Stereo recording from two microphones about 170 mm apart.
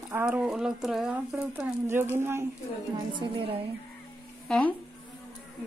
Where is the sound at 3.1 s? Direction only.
30° right (ahead or behind).